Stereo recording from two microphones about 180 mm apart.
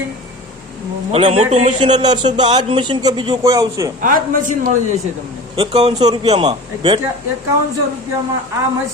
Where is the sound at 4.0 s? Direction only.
50° right (ahead or behind).